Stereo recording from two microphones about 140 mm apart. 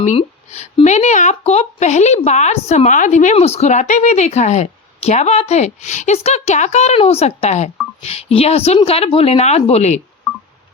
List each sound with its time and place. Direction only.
0.2 s speech: 45° left (ahead or behind)